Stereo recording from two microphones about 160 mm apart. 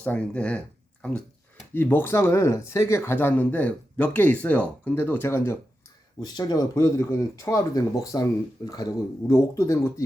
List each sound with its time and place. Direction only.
0.0 s speech: 5° left (ahead or behind)
6.1 s speech: 25° left (ahead or behind)